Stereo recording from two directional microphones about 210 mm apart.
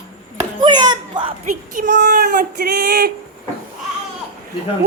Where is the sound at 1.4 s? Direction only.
40° right (ahead or behind).